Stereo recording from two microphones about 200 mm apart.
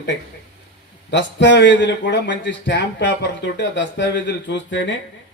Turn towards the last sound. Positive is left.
turn(degrees=65)  # may be behind; listen again after turning